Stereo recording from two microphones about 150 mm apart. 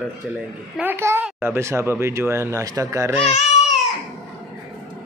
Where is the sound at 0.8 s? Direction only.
15° right (ahead or behind).